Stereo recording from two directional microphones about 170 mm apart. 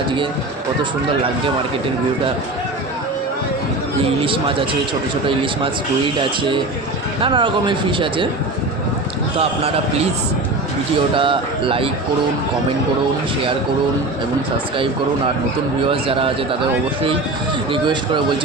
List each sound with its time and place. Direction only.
4.2 s speech: 30° right (ahead or behind)
6.1 s speech: 30° right (ahead or behind)
11.1 s speech: 30° right (ahead or behind)
15.9 s speech: 30° right (ahead or behind)
17.7 s speech: 30° right (ahead or behind)